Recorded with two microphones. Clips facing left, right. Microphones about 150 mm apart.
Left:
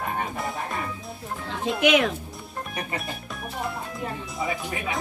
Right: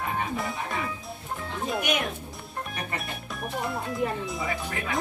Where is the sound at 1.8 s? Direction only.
90° left.